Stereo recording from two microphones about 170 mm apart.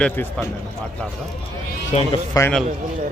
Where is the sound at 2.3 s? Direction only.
20° left (ahead or behind).